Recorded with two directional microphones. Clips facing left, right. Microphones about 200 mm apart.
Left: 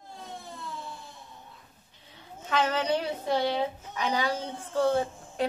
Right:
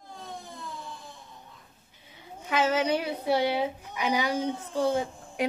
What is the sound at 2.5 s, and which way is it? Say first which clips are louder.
A woman's voice: right 1 dB; 10° right (ahead or behind).